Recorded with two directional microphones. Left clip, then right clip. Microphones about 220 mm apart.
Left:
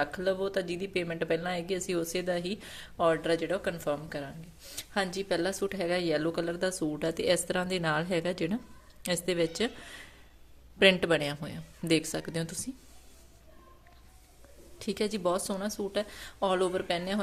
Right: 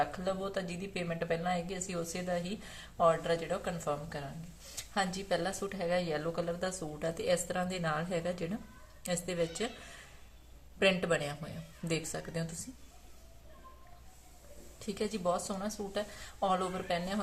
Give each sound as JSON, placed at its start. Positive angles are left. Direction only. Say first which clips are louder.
{"t": 0.0, "sound": "a woman's voice", "louder": "left 4 dB", "side_deg": 50}
{"t": 10.8, "sound": "a woman's voice", "louder": "left 6 dB", "side_deg": 45}
{"t": 14.8, "sound": "a woman's voice", "louder": "left 5 dB", "side_deg": 50}